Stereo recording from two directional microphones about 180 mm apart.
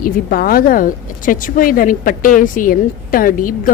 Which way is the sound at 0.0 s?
55° left (ahead or behind).